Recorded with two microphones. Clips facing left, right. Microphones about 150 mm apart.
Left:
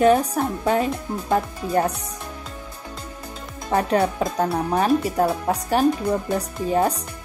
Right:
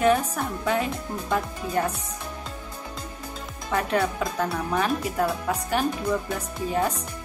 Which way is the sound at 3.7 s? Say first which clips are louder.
Left 5 dB; 35° left (ahead or behind).